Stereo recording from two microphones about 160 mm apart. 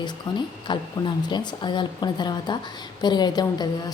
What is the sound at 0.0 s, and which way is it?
A woman's voice, 30° left (ahead or behind).